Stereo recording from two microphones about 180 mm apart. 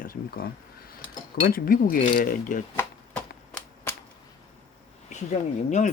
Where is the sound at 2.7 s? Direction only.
10° left (ahead or behind).